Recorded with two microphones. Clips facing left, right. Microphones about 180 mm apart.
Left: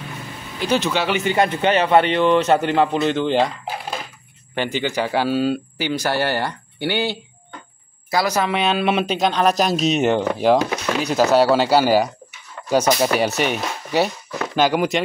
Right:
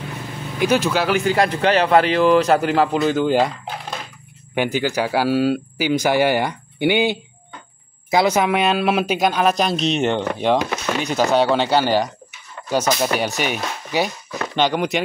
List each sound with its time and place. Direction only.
0.8 s a man's voice: centre (ahead or behind)
4.6 s speech: 5° right (ahead or behind); by 8.5 s 20° right (ahead or behind)
8.5 s a man's voice: 5° right (ahead or behind)